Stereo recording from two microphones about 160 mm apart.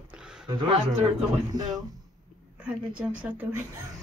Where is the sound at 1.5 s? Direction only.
25° right (ahead or behind).